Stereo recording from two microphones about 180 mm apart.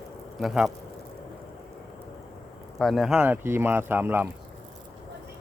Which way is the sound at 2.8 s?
Centre (ahead or behind).